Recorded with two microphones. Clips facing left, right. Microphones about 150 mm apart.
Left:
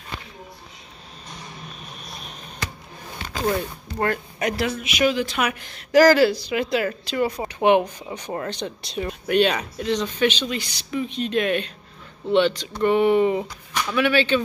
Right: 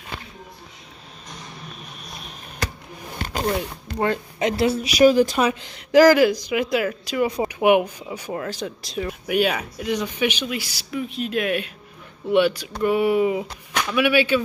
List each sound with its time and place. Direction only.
3.5 s speech: 20° right (ahead or behind); by 5.4 s 40° right (ahead or behind)
5.4 s speech: 20° right (ahead or behind)